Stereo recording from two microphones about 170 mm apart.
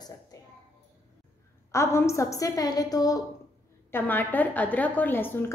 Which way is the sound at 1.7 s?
15° left (ahead or behind).